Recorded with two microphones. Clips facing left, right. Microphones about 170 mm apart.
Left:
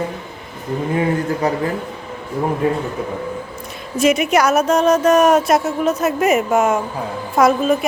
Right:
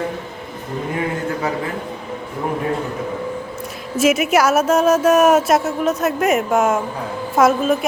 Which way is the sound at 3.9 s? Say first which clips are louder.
Even; 5° right (ahead or behind).